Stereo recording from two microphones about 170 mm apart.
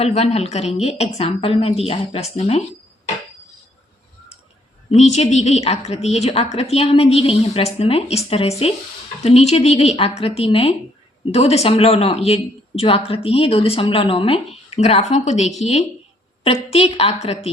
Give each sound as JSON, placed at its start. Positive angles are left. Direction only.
{"t": 0.0, "sound": "a woman's voice", "side_deg": 40}
{"t": 4.9, "sound": "a woman's voice", "side_deg": 40}